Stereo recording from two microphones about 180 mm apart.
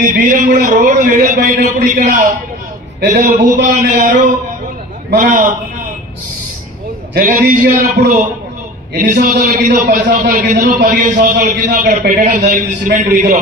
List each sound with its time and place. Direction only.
0.0 s a man's voice: 45° right (ahead or behind)
7.2 s a man's voice: 45° right (ahead or behind)